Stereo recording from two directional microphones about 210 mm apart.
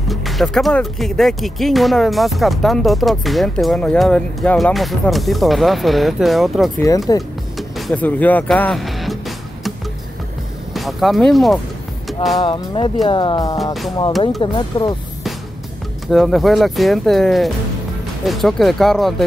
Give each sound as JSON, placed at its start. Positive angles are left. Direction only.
{"t": 0.1, "sound": "speech", "side_deg": 0}
{"t": 7.1, "sound": "speech", "side_deg": 20}
{"t": 7.5, "sound": "speech", "side_deg": 5}
{"t": 10.7, "sound": "speech", "side_deg": 0}
{"t": 12.4, "sound": "speech", "side_deg": 20}
{"t": 16.1, "sound": "speech", "side_deg": 0}